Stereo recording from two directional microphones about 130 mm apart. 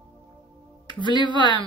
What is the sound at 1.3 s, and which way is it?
Speech, 35° left (ahead or behind).